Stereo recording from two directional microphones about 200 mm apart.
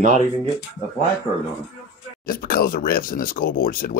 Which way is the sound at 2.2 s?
45° left (ahead or behind).